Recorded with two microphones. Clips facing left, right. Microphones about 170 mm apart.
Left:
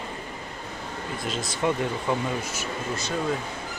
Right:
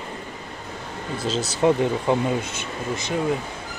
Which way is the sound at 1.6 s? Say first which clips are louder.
Right 7 dB; 30° right (ahead or behind).